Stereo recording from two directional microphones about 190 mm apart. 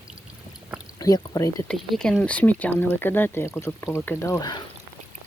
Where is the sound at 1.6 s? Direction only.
Centre (ahead or behind); by 4.6 s 20° left (ahead or behind).